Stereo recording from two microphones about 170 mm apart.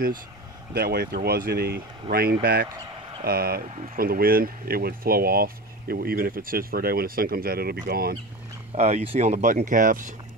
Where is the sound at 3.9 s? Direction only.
60° right (ahead or behind).